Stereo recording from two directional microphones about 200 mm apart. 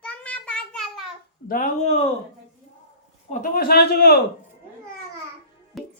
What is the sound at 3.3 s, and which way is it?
Speech, 45° left (ahead or behind).